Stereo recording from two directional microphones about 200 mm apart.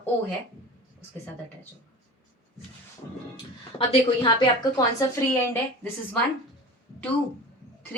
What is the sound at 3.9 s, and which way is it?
A woman's voice, 25° left (ahead or behind).